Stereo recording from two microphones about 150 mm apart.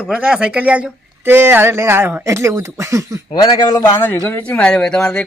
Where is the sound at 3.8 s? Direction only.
15° left (ahead or behind).